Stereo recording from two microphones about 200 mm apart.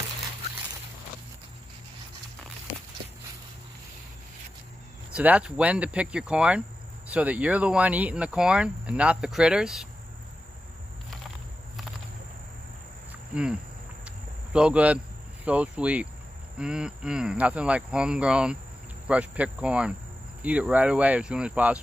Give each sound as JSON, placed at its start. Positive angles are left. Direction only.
{"t": 5.1, "sound": "speech", "side_deg": -5}
{"t": 13.3, "sound": "a sound", "side_deg": -5}
{"t": 15.4, "sound": "speech", "side_deg": -5}